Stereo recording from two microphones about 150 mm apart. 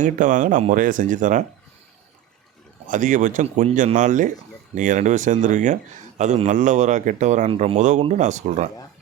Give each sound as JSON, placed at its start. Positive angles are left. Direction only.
{"t": 0.0, "sound": "speech", "side_deg": -60}
{"t": 2.8, "sound": "a man's voice", "side_deg": -60}
{"t": 7.8, "sound": "a man's voice", "side_deg": -50}